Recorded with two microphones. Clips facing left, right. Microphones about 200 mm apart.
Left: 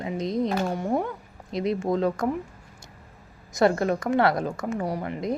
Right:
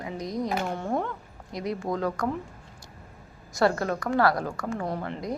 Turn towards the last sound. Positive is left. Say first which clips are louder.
# left 2 dB
turn(degrees=10)  # may be behind; listen again after turning